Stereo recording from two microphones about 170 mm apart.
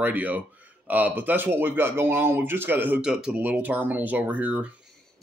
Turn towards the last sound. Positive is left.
turn(degrees=-5)  # may be behind; listen again after turning